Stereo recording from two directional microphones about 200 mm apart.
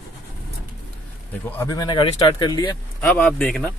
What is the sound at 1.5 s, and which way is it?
A man's voice, 15° left (ahead or behind).